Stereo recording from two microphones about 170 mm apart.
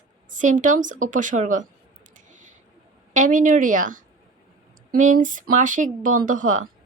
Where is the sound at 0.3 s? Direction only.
50° right (ahead or behind).